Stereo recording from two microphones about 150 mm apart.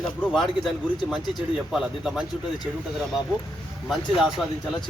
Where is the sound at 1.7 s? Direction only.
5° right (ahead or behind).